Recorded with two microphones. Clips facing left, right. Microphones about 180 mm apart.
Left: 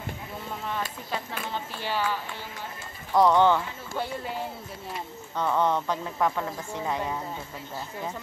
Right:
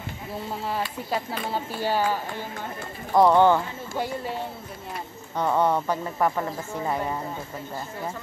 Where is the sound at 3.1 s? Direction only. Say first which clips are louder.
Right 3 dB; 10° right (ahead or behind).